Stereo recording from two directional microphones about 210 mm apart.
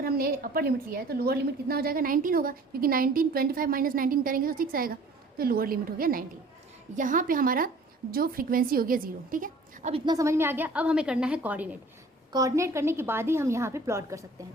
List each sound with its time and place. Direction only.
0.0 s a woman's voice: 45° right (ahead or behind)
9.9 s a woman's voice: 15° right (ahead or behind)